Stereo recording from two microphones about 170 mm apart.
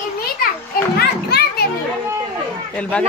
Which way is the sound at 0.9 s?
65° left (ahead or behind).